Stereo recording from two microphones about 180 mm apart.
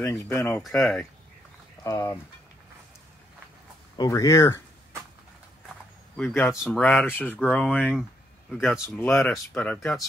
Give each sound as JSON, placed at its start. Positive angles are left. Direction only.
{"t": 0.1, "sound": "speech", "side_deg": 15}
{"t": 0.6, "sound": "speech", "side_deg": 0}
{"t": 1.8, "sound": "speech", "side_deg": 15}
{"t": 4.0, "sound": "speech", "side_deg": 20}
{"t": 6.1, "sound": "speech", "side_deg": 5}
{"t": 8.6, "sound": "speech", "side_deg": -5}